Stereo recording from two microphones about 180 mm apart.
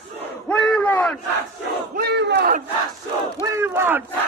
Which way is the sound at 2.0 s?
65° right (ahead or behind).